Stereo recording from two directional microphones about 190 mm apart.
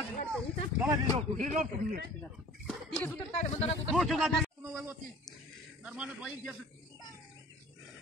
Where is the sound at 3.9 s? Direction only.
Centre (ahead or behind).